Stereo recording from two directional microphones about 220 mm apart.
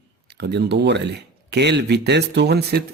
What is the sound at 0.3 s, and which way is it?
Speech, 50° right (ahead or behind).